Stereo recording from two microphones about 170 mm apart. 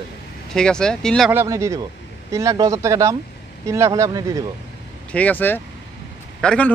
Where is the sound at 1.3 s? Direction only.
15° right (ahead or behind).